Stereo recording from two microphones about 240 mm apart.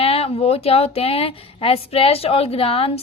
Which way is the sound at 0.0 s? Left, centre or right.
Left.